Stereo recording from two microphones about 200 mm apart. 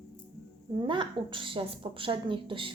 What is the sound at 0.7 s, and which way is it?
A woman's voice, 25° right (ahead or behind).